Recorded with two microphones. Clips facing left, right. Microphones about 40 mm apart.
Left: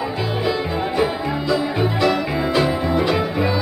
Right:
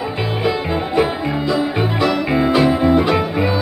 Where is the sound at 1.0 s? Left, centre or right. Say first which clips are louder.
Right 4 dB; centre.